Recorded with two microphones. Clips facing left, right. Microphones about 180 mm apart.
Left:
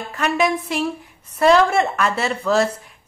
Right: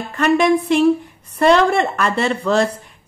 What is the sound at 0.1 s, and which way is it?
A woman's voice, centre (ahead or behind).